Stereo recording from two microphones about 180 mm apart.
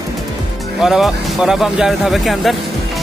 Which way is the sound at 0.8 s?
Centre (ahead or behind).